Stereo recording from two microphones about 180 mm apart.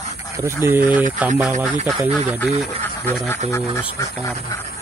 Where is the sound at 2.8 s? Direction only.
10° left (ahead or behind).